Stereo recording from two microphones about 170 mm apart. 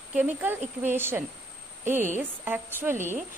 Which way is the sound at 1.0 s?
15° right (ahead or behind).